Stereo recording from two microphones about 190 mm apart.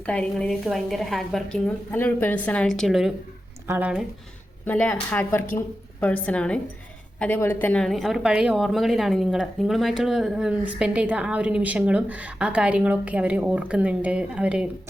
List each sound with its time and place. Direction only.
0.0 s a woman's voice: 5° left (ahead or behind)
4.6 s a woman's voice: 10° left (ahead or behind)